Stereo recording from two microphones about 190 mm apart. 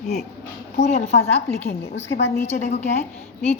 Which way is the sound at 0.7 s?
35° left (ahead or behind).